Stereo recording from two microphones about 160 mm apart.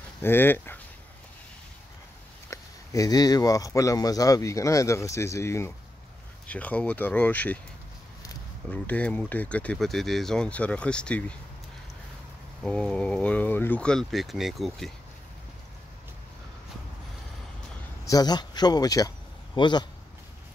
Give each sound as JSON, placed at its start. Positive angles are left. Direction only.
{"t": 0.2, "sound": "speech", "side_deg": 15}
{"t": 2.5, "sound": "speech", "side_deg": 20}
{"t": 8.6, "sound": "speech", "side_deg": 10}
{"t": 12.6, "sound": "speech", "side_deg": 5}
{"t": 18.0, "sound": "a man's voice", "side_deg": 25}